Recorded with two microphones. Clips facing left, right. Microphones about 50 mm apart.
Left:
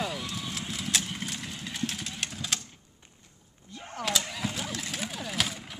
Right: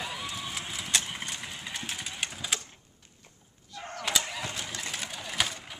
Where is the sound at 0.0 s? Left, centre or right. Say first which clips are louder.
Left 3 dB; centre.